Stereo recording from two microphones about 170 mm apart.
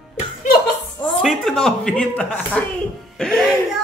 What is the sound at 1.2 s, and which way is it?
Speech, centre (ahead or behind).